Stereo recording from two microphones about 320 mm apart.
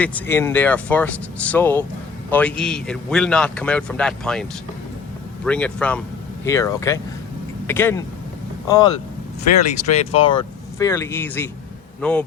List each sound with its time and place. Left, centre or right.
0.0 s a man's voice: centre
5.5 s a man's voice: centre